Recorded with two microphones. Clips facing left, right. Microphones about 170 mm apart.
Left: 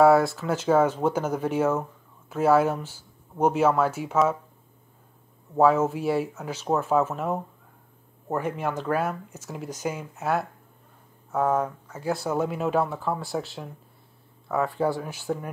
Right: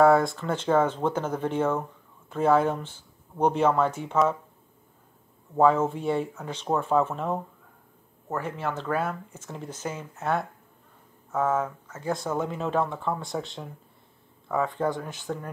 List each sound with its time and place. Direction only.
0.0 s speech: 5° left (ahead or behind)
5.6 s speech: 5° left (ahead or behind)
8.3 s speech: 15° left (ahead or behind)